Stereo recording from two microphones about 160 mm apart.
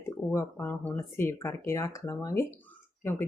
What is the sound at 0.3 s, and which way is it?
Speech, 15° left (ahead or behind).